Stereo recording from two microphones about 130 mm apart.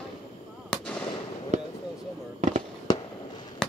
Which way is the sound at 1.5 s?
65° right (ahead or behind).